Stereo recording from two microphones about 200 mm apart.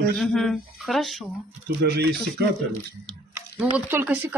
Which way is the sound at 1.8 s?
55° right (ahead or behind).